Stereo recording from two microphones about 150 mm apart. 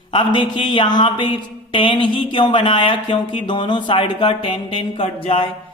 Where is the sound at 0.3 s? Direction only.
30° left (ahead or behind).